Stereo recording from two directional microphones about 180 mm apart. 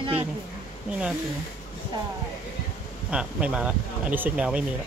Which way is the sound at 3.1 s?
5° right (ahead or behind).